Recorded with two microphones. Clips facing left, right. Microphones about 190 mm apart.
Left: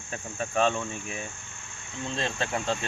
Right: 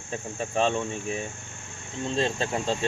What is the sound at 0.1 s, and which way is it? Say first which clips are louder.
Speech: right 2 dB; 30° right (ahead or behind).